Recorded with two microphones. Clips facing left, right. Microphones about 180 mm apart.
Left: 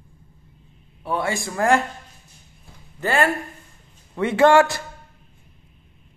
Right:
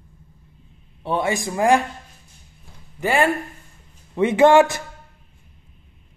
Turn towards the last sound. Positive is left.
turn(degrees=-20)  # may be behind; listen again after turning